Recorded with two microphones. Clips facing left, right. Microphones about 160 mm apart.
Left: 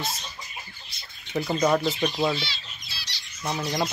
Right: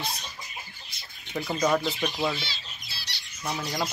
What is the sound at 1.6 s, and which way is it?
Speech, 5° left (ahead or behind).